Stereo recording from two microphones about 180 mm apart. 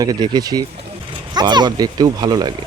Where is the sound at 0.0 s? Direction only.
20° right (ahead or behind).